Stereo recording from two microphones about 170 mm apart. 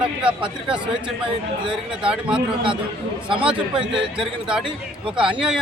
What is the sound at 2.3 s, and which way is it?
Speech, 30° right (ahead or behind).